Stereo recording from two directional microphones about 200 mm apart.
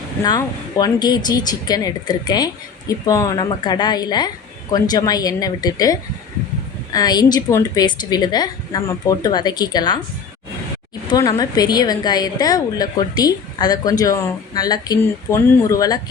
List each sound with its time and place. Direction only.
0.2 s a woman's voice: 20° left (ahead or behind)
11.1 s a woman's voice: 20° left (ahead or behind)